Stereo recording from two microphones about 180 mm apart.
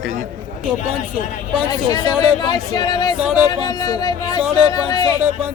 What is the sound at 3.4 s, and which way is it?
Speech, 20° left (ahead or behind).